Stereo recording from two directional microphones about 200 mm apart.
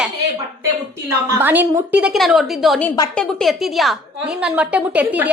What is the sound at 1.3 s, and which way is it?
A woman's voice, 10° right (ahead or behind).